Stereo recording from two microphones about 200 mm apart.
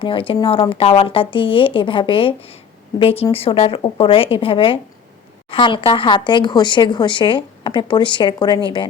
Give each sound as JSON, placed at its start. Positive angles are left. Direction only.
{"t": 0.0, "sound": "speech", "side_deg": 25}